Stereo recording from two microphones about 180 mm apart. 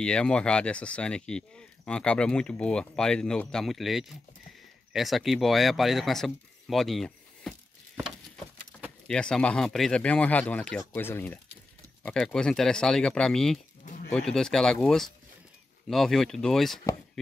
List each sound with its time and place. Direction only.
0.0 s speech: 5° left (ahead or behind)
9.0 s speech: 5° left (ahead or behind)
13.8 s bird: 45° left (ahead or behind)
14.1 s speech: 5° left (ahead or behind)